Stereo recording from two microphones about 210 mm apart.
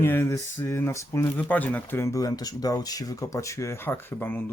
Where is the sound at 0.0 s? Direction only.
10° left (ahead or behind).